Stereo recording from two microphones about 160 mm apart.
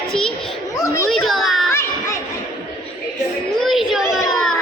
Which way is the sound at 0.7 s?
20° left (ahead or behind).